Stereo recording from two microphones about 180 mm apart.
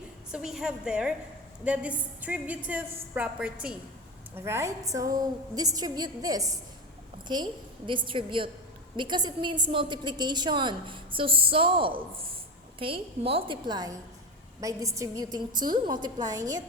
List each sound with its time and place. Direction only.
0.3 s a woman's voice: 5° right (ahead or behind); by 16.6 s 20° right (ahead or behind)